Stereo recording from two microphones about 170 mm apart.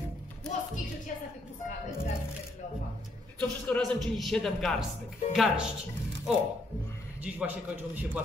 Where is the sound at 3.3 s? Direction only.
5° left (ahead or behind).